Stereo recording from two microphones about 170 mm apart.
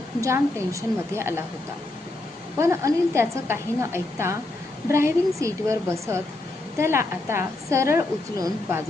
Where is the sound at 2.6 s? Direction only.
15° right (ahead or behind).